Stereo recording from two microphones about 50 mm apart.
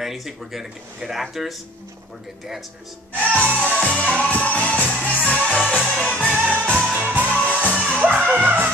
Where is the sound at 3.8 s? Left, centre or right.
Left.